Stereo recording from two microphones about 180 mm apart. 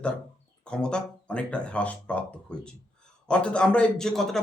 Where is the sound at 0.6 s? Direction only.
5° left (ahead or behind).